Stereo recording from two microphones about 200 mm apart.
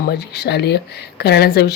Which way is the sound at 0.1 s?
55° left (ahead or behind).